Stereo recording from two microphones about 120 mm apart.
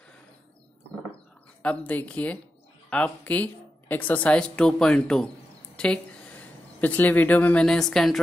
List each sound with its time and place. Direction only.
1.6 s a woman's voice: 10° left (ahead or behind)